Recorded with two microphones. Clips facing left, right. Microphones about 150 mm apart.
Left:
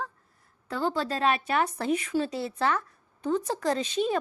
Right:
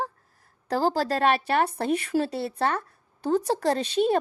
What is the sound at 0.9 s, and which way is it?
A woman's voice, 75° right (ahead or behind).